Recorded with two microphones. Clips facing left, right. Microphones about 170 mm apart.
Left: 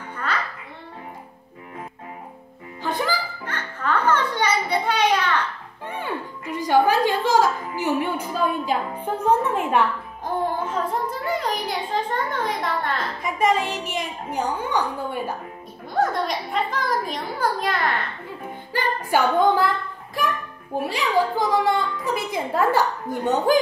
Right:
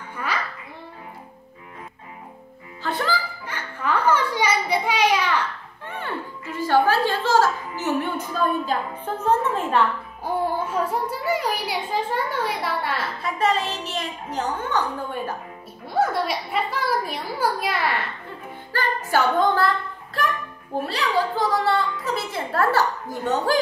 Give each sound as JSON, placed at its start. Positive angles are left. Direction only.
{"t": 2.8, "sound": "music", "side_deg": 15}
{"t": 3.4, "sound": "music", "side_deg": -10}
{"t": 5.9, "sound": "music", "side_deg": 15}
{"t": 10.7, "sound": "a child's voice", "side_deg": -5}
{"t": 13.2, "sound": "a woman's voice", "side_deg": 15}
{"t": 15.9, "sound": "a child's voice", "side_deg": -5}
{"t": 18.7, "sound": "a woman's voice", "side_deg": 15}
{"t": 20.8, "sound": "a woman's voice", "side_deg": 15}